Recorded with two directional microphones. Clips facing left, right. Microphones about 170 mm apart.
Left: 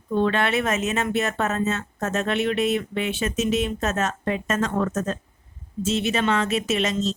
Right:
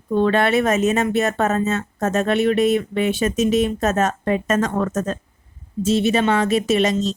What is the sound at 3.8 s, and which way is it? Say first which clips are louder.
Speech: right 5 dB; 45° right (ahead or behind).